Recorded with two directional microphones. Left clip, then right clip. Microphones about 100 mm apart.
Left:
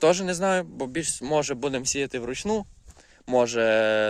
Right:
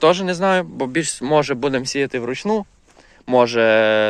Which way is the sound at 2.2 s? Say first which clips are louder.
Right 7 dB; 80° left.